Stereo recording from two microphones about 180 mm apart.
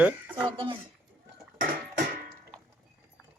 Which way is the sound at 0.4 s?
30° right (ahead or behind).